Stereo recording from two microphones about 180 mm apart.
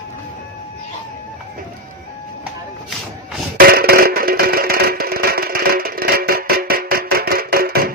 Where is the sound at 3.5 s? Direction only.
55° right (ahead or behind).